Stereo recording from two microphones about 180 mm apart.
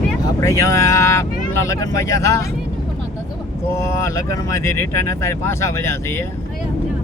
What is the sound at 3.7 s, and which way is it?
Speech, 15° left (ahead or behind).